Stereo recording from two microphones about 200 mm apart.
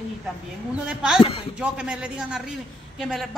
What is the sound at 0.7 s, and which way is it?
A man's voice, 5° right (ahead or behind).